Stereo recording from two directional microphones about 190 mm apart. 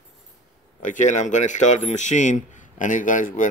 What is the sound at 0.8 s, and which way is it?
Speech, 40° left (ahead or behind).